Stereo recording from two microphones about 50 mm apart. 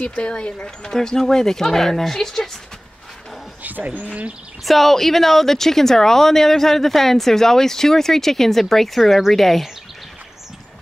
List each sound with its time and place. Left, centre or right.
0.0 s speech: left
0.9 s speech: centre
3.6 s speech: right
4.6 s speech: centre